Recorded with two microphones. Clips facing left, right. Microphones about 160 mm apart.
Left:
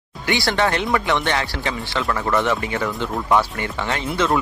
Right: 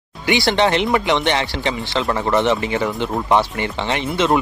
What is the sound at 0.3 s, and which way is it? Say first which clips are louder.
Speech: right 4 dB; 20° right (ahead or behind).